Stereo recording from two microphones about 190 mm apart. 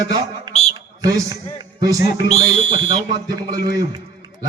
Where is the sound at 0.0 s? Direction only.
20° right (ahead or behind).